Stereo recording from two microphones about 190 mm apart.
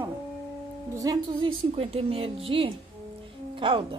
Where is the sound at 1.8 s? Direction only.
30° right (ahead or behind).